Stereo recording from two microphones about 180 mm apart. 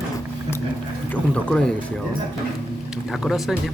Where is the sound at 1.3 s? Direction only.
5° left (ahead or behind).